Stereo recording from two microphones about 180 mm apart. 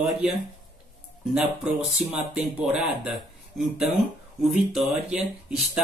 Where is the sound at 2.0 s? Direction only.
5° right (ahead or behind).